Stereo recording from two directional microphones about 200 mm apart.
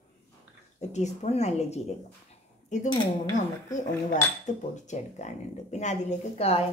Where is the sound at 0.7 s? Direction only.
35° left (ahead or behind).